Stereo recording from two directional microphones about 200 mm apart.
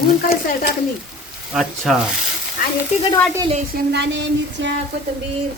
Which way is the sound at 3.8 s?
60° right (ahead or behind).